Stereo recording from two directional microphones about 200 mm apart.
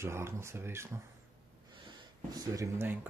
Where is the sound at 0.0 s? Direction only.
15° right (ahead or behind).